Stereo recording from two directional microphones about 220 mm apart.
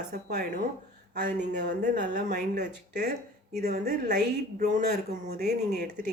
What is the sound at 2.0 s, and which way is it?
Speech, 35° right (ahead or behind).